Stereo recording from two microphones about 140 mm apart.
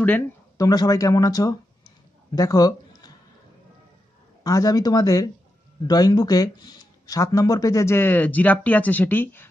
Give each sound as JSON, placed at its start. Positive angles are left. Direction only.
{"t": 0.6, "sound": "speech", "side_deg": 25}
{"t": 4.4, "sound": "speech", "side_deg": 25}